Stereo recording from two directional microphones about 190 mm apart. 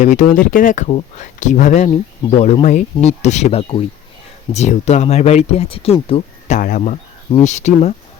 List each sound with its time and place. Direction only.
0.0 s speech: 40° left (ahead or behind)
6.6 s speech: 45° left (ahead or behind)